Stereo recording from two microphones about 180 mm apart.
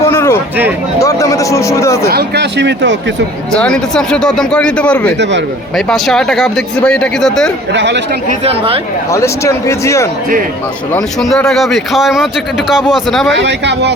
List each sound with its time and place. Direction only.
0.1 s a sound: 15° left (ahead or behind)
0.9 s a man's voice: 20° left (ahead or behind)
2.1 s speech: 70° right (ahead or behind); by 3.0 s 85° right
3.5 s speech: 5° left (ahead or behind)
7.7 s speech: 75° right (ahead or behind)
8.4 s speech: 30° right (ahead or behind)
9.1 s a man's voice: 15° left (ahead or behind)
10.9 s speech: 5° left (ahead or behind)
13.4 s speech: 75° right (ahead or behind)